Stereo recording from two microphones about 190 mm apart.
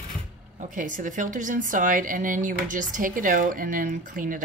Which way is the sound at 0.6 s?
45° right (ahead or behind).